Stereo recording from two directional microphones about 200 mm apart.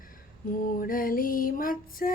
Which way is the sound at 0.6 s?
45° left (ahead or behind).